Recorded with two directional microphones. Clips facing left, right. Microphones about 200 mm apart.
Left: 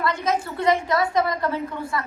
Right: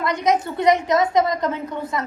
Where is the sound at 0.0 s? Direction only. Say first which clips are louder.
Right 4 dB; 20° right (ahead or behind).